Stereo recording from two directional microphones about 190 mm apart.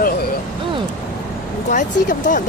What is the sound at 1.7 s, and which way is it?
Speech, 40° left (ahead or behind).